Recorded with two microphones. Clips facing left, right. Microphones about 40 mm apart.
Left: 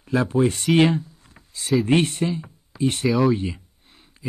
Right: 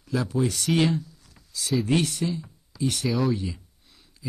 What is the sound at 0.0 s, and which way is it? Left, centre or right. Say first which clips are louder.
Speech: left 6 dB; left.